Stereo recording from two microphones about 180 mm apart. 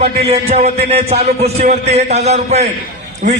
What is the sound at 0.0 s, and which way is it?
A man's voice, 35° right (ahead or behind).